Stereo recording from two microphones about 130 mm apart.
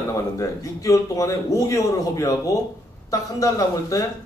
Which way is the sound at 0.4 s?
25° left (ahead or behind).